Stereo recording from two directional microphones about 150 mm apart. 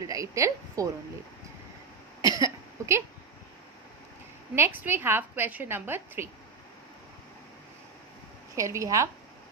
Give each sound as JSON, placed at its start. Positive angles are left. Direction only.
{"t": 0.0, "sound": "a woman's voice", "side_deg": -20}
{"t": 2.2, "sound": "cough", "side_deg": -25}
{"t": 4.6, "sound": "a woman's voice", "side_deg": -15}
{"t": 8.5, "sound": "a woman's voice", "side_deg": -20}